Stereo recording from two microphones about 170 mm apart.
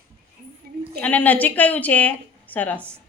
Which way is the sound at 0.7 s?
60° right (ahead or behind).